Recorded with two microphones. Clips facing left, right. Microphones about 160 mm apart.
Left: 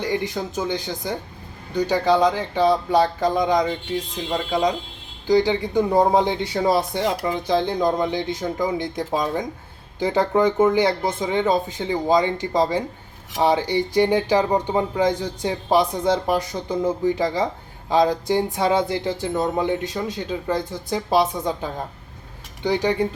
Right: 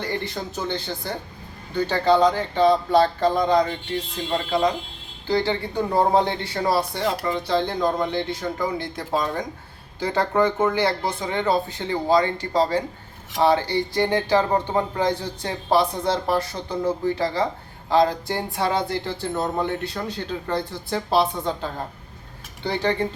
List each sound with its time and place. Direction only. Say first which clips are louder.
0.0 s speech: left 4 dB; 15° left (ahead or behind)